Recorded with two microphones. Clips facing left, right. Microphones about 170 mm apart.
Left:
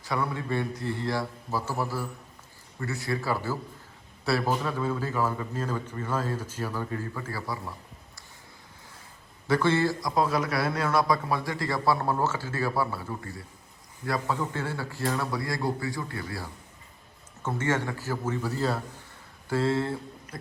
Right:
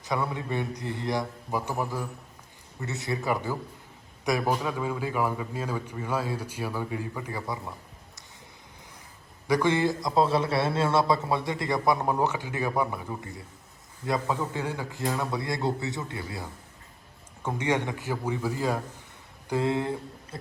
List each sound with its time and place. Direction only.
0.0 s a man's voice: 20° right (ahead or behind)
9.5 s a man's voice: 15° right (ahead or behind)